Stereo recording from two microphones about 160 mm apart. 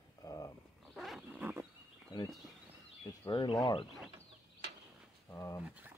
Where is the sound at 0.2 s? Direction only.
20° left (ahead or behind).